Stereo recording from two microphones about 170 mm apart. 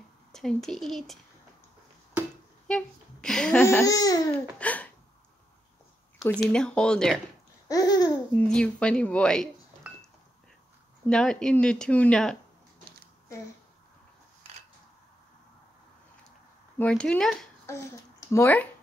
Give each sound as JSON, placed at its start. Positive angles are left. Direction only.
{"t": 0.3, "sound": "speech", "side_deg": 0}
{"t": 2.7, "sound": "speech", "side_deg": 5}
{"t": 3.8, "sound": "speech", "side_deg": 20}
{"t": 4.6, "sound": "a sound", "side_deg": 10}
{"t": 6.4, "sound": "speech", "side_deg": 5}
{"t": 7.6, "sound": "babbling", "side_deg": 20}
{"t": 8.4, "sound": "speech", "side_deg": 5}
{"t": 11.1, "sound": "speech", "side_deg": 5}
{"t": 16.7, "sound": "speech", "side_deg": 5}